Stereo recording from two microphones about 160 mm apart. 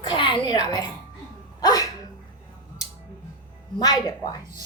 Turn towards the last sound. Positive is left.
turn(degrees=25)  # may be behind; listen again after turning